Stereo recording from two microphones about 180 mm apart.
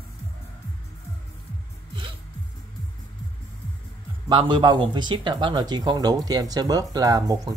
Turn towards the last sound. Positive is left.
turn(degrees=-20)  # may be behind; listen again after turning